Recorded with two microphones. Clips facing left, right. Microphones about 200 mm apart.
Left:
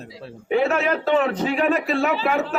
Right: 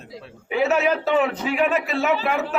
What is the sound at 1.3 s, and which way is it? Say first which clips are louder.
Speech: left 1 dB; 40° left (ahead or behind).